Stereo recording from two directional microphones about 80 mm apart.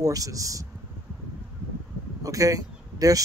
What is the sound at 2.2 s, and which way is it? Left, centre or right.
Speech, right.